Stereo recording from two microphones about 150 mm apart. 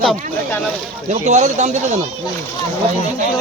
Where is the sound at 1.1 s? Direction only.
50° right (ahead or behind).